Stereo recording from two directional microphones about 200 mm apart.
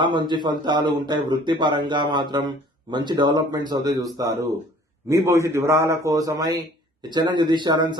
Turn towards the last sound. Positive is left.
turn(degrees=-20)  # may be behind; listen again after turning